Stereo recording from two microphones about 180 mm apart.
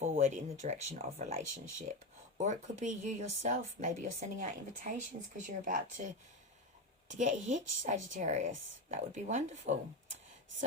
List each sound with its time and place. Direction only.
0.0 s a woman's voice: 45° right (ahead or behind)
5.5 s a woman's voice: 45° right (ahead or behind)